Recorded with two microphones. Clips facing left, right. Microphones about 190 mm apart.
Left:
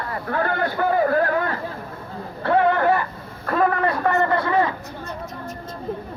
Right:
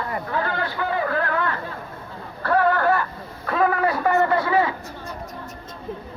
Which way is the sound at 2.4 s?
25° left (ahead or behind).